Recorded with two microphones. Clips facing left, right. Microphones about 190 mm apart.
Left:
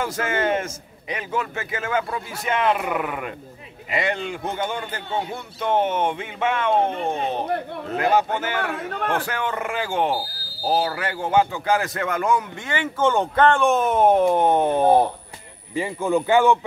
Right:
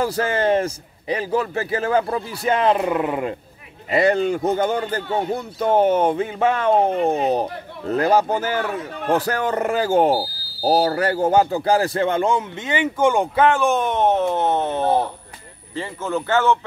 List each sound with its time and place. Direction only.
0.0 s speech: 35° right (ahead or behind)
3.9 s speech: 40° right (ahead or behind); by 16.5 s 15° left (ahead or behind)